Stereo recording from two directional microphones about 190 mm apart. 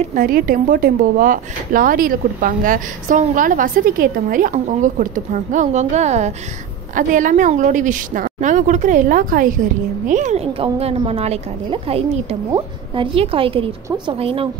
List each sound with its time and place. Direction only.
0.1 s a woman's voice: 45° right (ahead or behind)
12.4 s speech: 20° right (ahead or behind)